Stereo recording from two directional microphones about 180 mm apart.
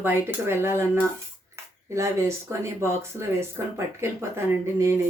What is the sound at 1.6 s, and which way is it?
Cutlery, 15° right (ahead or behind).